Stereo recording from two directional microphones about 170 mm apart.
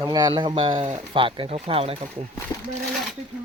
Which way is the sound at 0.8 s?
40° right (ahead or behind).